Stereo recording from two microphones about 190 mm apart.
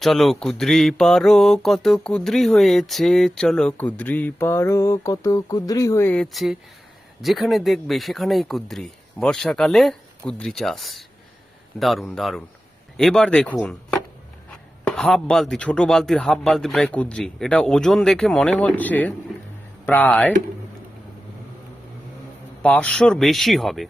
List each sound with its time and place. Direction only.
0.0 s speech: centre (ahead or behind)
22.6 s speech: 5° left (ahead or behind)